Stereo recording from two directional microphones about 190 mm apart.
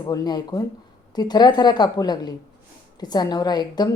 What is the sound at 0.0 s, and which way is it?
A woman's voice, 20° left (ahead or behind).